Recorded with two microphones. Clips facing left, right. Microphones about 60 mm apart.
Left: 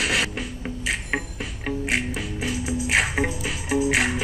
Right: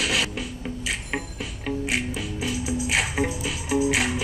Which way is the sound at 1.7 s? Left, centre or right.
Left.